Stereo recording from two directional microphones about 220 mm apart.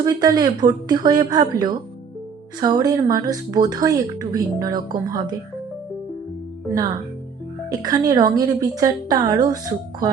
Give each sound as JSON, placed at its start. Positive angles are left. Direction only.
{"t": 0.0, "sound": "speech", "side_deg": -15}
{"t": 6.7, "sound": "speech", "side_deg": -15}